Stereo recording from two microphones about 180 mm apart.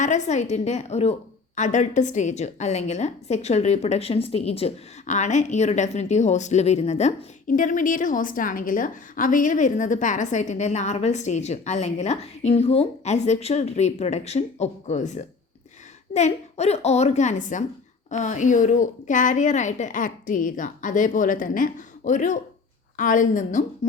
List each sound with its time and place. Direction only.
0.0 s a woman's voice: 40° left (ahead or behind)